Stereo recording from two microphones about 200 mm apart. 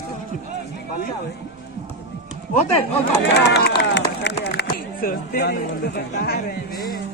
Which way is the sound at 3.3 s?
55° left (ahead or behind).